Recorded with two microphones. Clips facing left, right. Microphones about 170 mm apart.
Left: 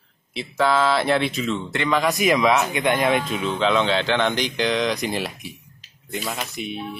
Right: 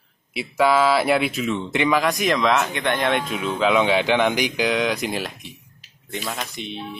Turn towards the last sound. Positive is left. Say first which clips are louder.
# left 1 dB
turn(degrees=5)  # may be behind; listen again after turning